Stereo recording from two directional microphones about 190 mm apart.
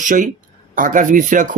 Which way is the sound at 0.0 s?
40° right (ahead or behind).